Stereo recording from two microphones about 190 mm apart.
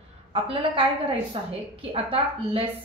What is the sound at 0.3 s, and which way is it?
A woman's voice, 30° right (ahead or behind).